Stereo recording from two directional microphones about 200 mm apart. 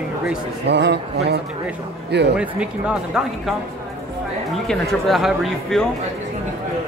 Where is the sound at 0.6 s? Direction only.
60° right (ahead or behind).